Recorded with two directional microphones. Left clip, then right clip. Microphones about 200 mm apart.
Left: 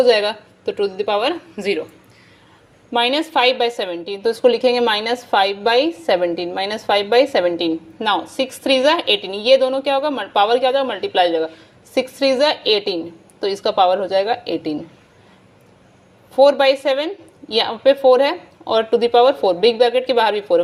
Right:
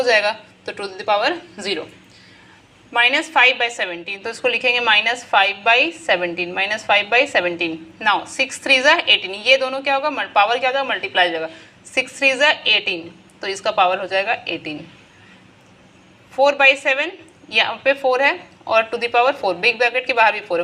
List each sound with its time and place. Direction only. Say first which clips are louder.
0.0 s a woman's voice: left 2 dB; 60° left (ahead or behind)
3.1 s a woman's voice: right 2 dB; 60° left (ahead or behind)
16.3 s a woman's voice: left 1 dB; 60° left (ahead or behind)